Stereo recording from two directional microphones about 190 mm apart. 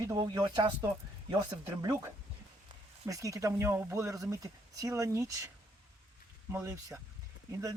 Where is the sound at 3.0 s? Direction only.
15° right (ahead or behind).